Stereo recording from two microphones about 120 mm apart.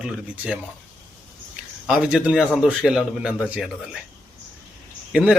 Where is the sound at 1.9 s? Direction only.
5° right (ahead or behind).